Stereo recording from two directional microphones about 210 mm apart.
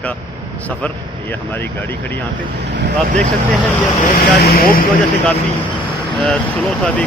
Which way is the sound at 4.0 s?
45° left (ahead or behind).